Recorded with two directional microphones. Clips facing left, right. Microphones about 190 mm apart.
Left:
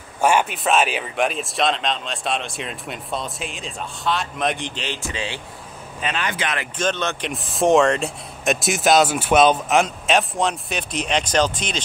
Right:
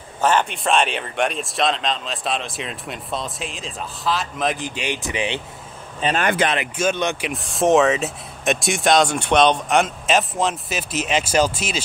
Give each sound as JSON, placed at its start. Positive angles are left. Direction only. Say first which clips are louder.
{"t": 0.2, "sound": "speech", "louder": "left 1 dB", "side_deg": 10}
{"t": 6.1, "sound": "speech", "louder": "right 8 dB", "side_deg": -50}
{"t": 6.8, "sound": "speech", "louder": "right 1 dB", "side_deg": -10}
{"t": 7.2, "sound": "speech", "louder": "left 1 dB", "side_deg": 0}